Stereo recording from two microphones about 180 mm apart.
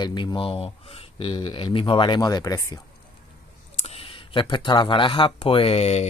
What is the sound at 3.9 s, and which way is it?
Speech, 30° left (ahead or behind).